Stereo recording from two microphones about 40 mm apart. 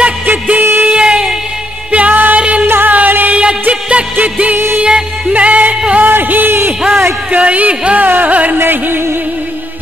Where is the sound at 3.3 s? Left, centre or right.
Right.